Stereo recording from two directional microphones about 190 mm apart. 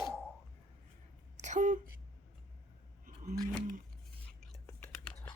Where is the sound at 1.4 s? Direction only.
40° right (ahead or behind).